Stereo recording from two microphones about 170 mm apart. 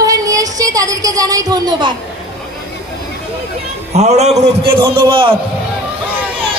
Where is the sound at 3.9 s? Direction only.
40° right (ahead or behind).